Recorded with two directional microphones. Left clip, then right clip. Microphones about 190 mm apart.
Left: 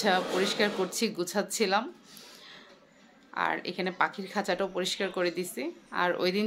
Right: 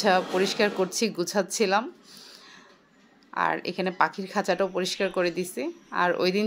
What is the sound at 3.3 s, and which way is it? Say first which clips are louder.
Speech: right 4 dB; 25° right (ahead or behind).